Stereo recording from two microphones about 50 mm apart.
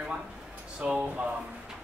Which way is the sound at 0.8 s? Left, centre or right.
Right.